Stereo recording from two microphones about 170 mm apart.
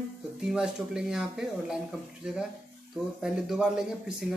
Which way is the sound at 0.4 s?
5° right (ahead or behind).